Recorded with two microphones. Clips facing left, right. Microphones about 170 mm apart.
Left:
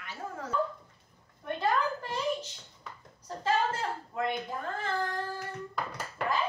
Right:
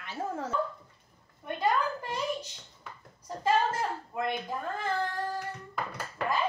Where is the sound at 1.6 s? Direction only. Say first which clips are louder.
Right 1 dB; 10° right (ahead or behind).